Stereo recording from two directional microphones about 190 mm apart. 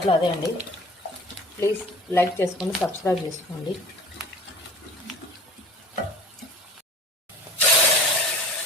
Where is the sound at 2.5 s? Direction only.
Centre (ahead or behind).